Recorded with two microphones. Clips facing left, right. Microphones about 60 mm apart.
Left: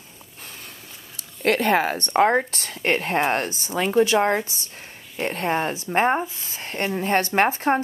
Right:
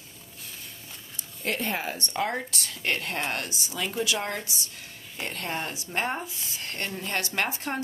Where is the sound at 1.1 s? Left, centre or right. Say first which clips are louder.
Left 10 dB; left.